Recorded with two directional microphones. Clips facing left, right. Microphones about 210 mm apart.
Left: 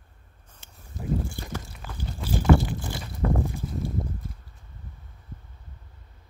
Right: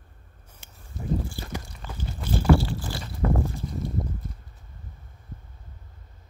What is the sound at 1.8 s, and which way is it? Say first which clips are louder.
Crunch: right 1 dB; 10° left (ahead or behind).